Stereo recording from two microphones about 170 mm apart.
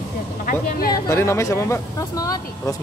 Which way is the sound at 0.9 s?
15° left (ahead or behind).